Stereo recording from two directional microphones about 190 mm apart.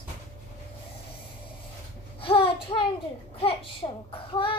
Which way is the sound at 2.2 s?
30° left (ahead or behind).